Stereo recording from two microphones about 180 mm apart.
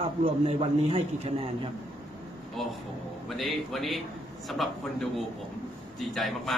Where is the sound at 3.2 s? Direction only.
Centre (ahead or behind).